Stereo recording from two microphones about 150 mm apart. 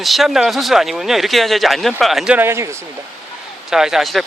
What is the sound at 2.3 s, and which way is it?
Speech, 15° right (ahead or behind).